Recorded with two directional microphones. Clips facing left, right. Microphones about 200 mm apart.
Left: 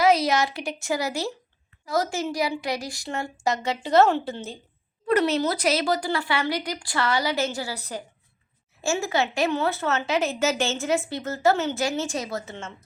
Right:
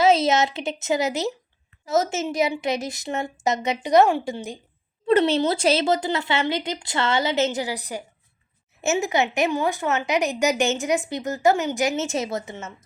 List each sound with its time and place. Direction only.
0.0 s speech: 25° right (ahead or behind)
5.0 s speech: 25° right (ahead or behind)